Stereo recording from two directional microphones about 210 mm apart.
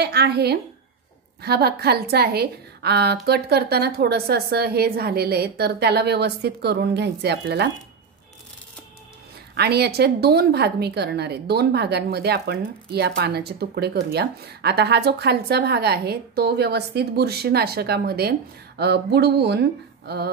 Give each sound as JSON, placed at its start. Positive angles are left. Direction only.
{"t": 0.0, "sound": "a woman's voice", "side_deg": -50}
{"t": 9.6, "sound": "a woman's voice", "side_deg": -50}